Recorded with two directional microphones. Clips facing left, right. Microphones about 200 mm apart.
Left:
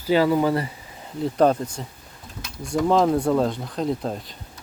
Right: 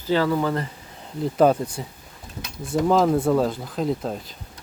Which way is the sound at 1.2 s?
5° right (ahead or behind).